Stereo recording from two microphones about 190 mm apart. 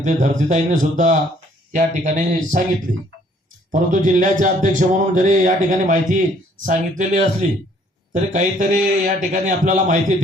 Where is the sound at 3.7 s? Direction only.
40° right (ahead or behind).